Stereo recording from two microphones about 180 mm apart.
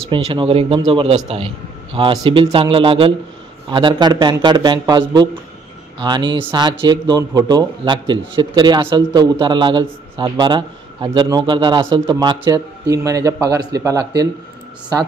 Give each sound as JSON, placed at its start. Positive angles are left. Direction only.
{"t": 0.1, "sound": "a man's voice", "side_deg": -30}